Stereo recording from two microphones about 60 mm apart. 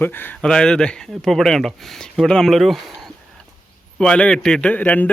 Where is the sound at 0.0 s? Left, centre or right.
Left.